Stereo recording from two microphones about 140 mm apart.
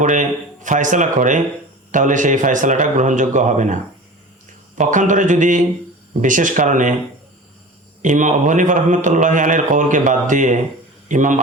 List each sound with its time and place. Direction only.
0.0 s a man's voice: 65° right (ahead or behind)
8.0 s a man's voice: 65° right (ahead or behind)